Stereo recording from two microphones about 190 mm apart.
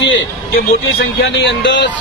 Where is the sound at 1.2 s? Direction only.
65° left (ahead or behind).